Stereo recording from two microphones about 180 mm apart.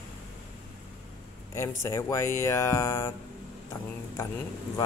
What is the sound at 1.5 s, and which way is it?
Speech, 15° left (ahead or behind).